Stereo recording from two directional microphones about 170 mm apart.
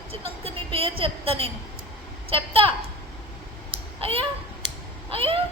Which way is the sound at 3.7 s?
35° right (ahead or behind).